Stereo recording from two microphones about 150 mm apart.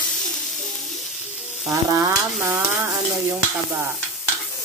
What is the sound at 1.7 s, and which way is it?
Stir, 20° right (ahead or behind).